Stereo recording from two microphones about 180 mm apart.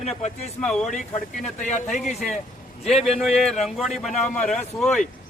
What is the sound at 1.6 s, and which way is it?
Speech, 40° left (ahead or behind).